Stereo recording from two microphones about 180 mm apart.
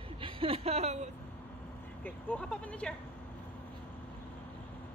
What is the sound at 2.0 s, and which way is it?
Speech, 5° left (ahead or behind).